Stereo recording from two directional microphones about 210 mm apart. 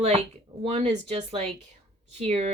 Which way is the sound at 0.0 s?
30° right (ahead or behind).